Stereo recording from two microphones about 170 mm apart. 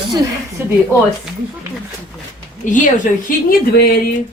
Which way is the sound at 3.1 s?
55° left (ahead or behind).